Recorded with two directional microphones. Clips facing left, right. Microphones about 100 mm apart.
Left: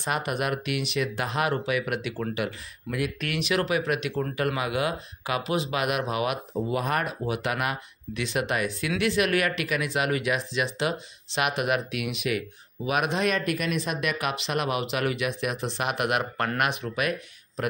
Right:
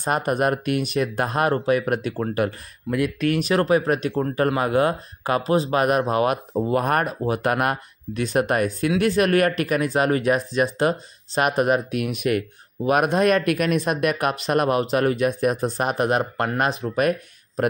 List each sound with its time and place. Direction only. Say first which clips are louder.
0.0 s speech: right 7 dB; 45° right (ahead or behind)
16.9 s speech: right 7 dB; 40° right (ahead or behind)